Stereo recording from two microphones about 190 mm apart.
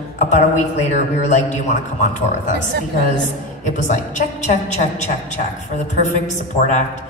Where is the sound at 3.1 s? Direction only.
40° left (ahead or behind).